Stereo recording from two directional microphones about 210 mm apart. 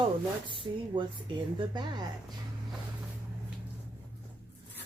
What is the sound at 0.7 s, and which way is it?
Speech, 20° right (ahead or behind).